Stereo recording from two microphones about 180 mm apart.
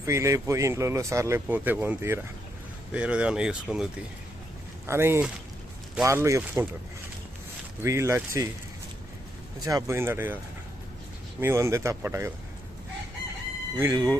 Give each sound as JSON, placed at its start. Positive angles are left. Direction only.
{"t": 0.0, "sound": "speech", "side_deg": -15}
{"t": 7.8, "sound": "speech", "side_deg": -15}
{"t": 9.6, "sound": "speech", "side_deg": -15}
{"t": 11.3, "sound": "speech", "side_deg": -15}
{"t": 13.7, "sound": "speech", "side_deg": -20}